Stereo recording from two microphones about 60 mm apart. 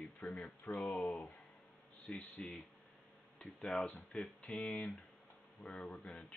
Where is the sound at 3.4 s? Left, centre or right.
Centre.